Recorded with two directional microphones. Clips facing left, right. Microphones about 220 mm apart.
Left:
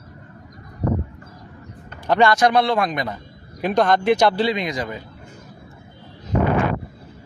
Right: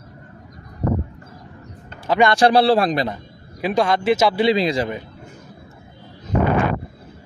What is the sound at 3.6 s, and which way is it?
Speech, 5° right (ahead or behind).